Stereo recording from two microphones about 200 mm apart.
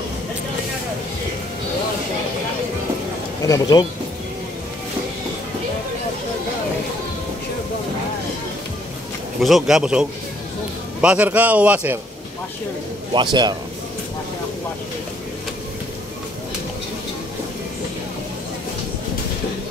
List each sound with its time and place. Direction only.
3.4 s speech: 20° left (ahead or behind)
9.4 s a man's voice: centre (ahead or behind)
13.1 s a man's voice: 20° right (ahead or behind)